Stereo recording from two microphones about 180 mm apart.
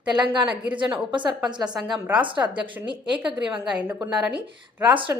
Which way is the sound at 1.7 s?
Centre (ahead or behind).